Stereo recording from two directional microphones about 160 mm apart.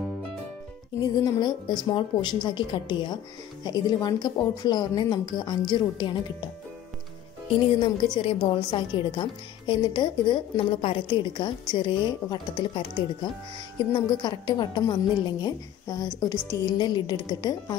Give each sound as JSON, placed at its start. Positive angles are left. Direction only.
{"t": 1.0, "sound": "a woman's voice", "side_deg": 25}
{"t": 7.8, "sound": "a woman's voice", "side_deg": 30}
{"t": 13.9, "sound": "a woman's voice", "side_deg": 30}